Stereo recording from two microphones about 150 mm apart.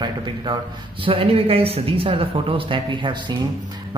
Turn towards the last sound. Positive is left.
turn(degrees=-30)  # may be behind; listen again after turning